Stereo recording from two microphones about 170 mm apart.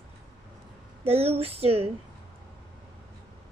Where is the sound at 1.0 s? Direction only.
35° right (ahead or behind).